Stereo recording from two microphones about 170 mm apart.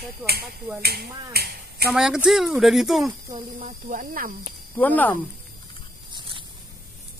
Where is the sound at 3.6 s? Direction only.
50° right (ahead or behind).